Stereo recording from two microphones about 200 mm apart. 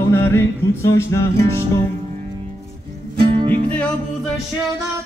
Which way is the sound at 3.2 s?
25° right (ahead or behind).